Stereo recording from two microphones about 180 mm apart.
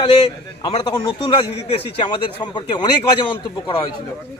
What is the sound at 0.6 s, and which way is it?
A man's voice, 30° left (ahead or behind).